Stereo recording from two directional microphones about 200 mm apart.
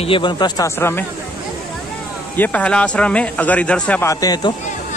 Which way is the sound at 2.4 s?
5° left (ahead or behind).